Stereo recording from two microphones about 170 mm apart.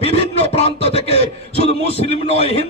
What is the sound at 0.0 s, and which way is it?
Music, 35° left (ahead or behind).